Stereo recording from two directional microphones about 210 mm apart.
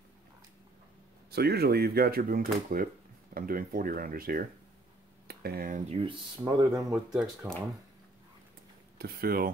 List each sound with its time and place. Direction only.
1.3 s speech: 50° right (ahead or behind); by 7.6 s 10° right (ahead or behind)
8.9 s speech: 45° right (ahead or behind)